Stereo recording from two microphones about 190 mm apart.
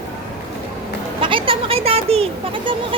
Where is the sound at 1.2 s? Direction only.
25° right (ahead or behind).